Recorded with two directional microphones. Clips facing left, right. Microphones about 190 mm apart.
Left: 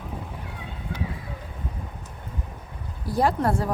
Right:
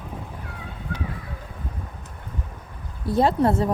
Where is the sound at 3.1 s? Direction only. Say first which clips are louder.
Right 3 dB; 25° right (ahead or behind).